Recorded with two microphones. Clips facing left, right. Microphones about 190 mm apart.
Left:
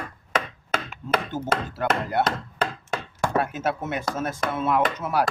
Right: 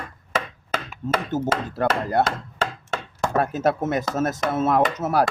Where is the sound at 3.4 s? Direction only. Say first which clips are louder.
Right 6 dB; 40° right (ahead or behind).